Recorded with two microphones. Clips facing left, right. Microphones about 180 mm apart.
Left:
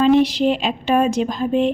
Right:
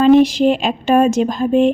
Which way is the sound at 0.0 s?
45° right (ahead or behind).